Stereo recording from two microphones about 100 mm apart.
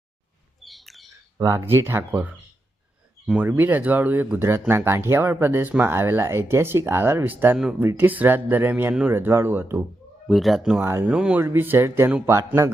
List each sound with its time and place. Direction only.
0.6 s bird: centre (ahead or behind)
1.4 s speech: 30° right (ahead or behind)
3.3 s speech: 20° right (ahead or behind)
10.2 s speech: centre (ahead or behind)
10.8 s speech: 25° right (ahead or behind)
11.0 s speech: 10° right (ahead or behind)
11.3 s speech: 20° right (ahead or behind)